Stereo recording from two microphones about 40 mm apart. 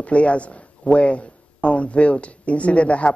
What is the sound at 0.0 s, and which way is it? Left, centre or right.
Speech, left.